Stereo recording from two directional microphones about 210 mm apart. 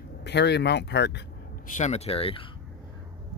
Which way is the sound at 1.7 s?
30° left (ahead or behind).